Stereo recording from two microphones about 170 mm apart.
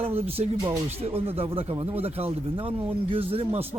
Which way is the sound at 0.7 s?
10° right (ahead or behind).